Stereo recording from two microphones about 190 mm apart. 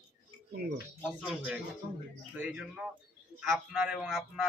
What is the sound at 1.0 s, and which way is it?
Speech, centre (ahead or behind).